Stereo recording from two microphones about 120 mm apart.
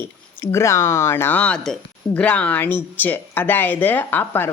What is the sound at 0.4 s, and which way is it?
Speech, 25° left (ahead or behind).